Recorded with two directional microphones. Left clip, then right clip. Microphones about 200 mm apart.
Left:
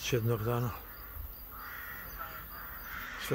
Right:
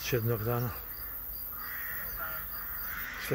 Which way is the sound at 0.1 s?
25° left (ahead or behind).